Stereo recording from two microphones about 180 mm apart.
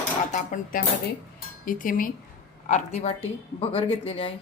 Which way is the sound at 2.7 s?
40° left (ahead or behind).